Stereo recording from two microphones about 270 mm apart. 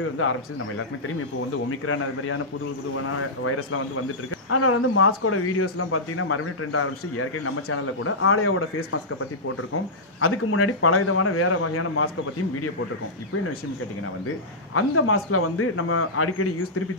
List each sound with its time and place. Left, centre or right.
0.2 s a man's voice: left
1.9 s a man's voice: left
3.4 s a man's voice: left
10.2 s a man's voice: left
14.7 s a man's voice: left